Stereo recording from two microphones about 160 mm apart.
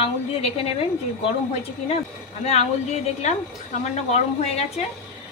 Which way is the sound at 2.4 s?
40° left (ahead or behind).